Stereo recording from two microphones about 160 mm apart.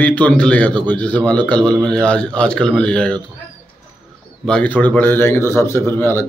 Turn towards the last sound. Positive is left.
turn(degrees=15)  # may be behind; listen again after turning